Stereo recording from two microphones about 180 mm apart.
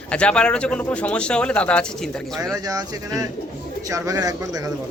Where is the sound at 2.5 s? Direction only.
20° right (ahead or behind).